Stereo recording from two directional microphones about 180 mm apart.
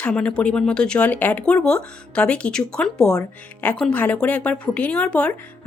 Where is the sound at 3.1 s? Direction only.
15° left (ahead or behind).